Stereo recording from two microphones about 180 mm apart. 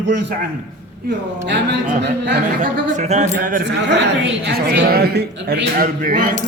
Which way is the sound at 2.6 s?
45° right (ahead or behind).